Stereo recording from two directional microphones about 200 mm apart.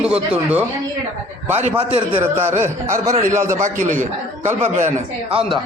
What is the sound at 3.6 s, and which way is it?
A man's voice, 35° right (ahead or behind).